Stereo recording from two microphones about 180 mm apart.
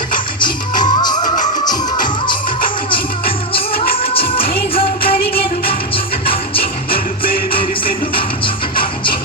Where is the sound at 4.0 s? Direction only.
30° left (ahead or behind).